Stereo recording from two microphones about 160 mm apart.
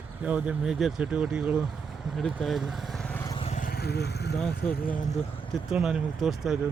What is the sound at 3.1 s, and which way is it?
Vehicle, 15° left (ahead or behind).